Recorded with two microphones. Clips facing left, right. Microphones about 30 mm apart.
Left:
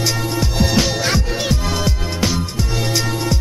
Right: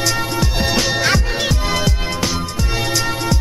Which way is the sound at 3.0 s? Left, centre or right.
Centre.